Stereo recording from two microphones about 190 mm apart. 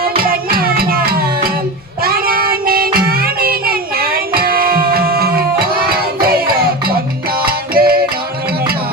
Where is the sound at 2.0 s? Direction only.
50° right (ahead or behind).